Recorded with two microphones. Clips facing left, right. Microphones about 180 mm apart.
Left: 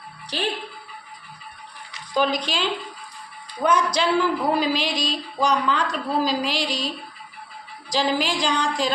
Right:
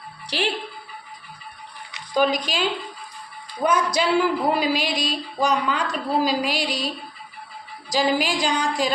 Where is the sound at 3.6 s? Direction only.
25° right (ahead or behind).